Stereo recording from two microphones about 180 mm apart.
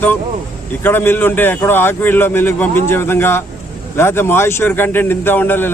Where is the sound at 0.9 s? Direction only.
10° left (ahead or behind).